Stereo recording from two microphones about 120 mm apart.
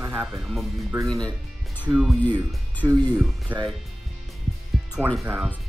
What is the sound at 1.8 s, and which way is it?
Speech, 10° right (ahead or behind).